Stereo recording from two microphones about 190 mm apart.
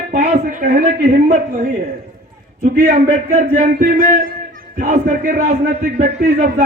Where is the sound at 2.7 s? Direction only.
40° right (ahead or behind).